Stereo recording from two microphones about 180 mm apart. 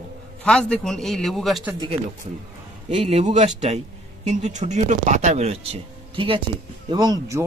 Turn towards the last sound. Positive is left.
turn(degrees=-20)  # may be behind; listen again after turning